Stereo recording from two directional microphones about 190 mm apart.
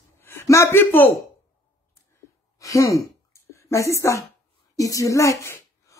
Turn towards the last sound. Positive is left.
turn(degrees=15)  # may be behind; listen again after turning